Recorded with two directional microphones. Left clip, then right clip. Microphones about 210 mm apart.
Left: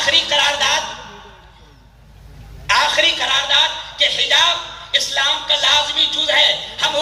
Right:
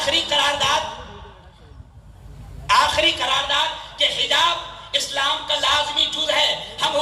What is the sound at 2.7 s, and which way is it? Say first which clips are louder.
A woman's voice: left 2 dB; 50° right (ahead or behind).